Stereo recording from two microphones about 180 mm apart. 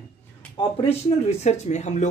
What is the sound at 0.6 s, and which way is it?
Speech, 25° left (ahead or behind).